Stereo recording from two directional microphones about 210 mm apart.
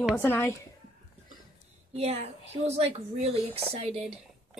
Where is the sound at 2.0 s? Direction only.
30° right (ahead or behind).